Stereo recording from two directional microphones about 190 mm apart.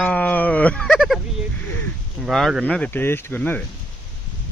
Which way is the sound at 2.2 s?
Centre (ahead or behind).